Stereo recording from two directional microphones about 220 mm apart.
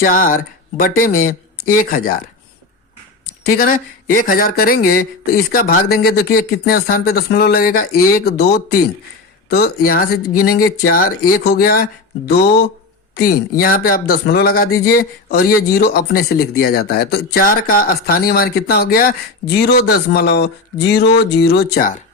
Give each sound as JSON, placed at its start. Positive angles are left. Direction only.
{"t": 0.0, "sound": "speech", "side_deg": 40}
{"t": 3.4, "sound": "speech", "side_deg": 45}